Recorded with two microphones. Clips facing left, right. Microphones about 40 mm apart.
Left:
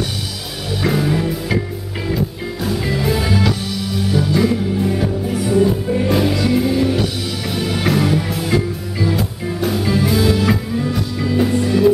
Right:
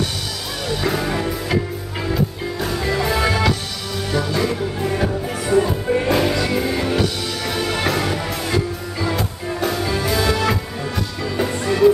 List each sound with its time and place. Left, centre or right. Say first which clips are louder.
0.7 s music: left 3 dB; centre
2.6 s music: left 1 dB; centre
3.9 s music: left 3 dB; centre
7.0 s music: even; centre